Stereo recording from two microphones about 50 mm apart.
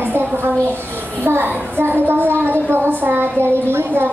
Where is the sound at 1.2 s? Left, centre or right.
Right.